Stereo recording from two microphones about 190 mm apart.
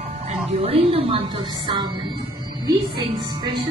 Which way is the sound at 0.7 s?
30° right (ahead or behind).